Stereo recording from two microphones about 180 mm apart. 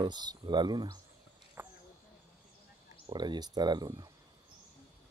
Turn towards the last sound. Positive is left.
turn(degrees=-20)  # may be behind; listen again after turning